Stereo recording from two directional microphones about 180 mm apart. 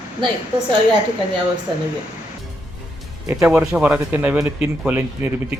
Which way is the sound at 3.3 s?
10° right (ahead or behind).